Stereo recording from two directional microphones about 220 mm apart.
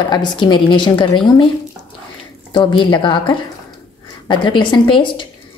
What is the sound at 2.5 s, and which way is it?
A woman's voice, 20° left (ahead or behind).